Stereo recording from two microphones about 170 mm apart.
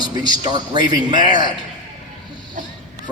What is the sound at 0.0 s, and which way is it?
A man's voice, 25° right (ahead or behind).